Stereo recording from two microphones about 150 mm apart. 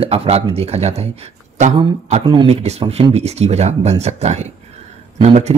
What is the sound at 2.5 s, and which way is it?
Speech, 45° right (ahead or behind).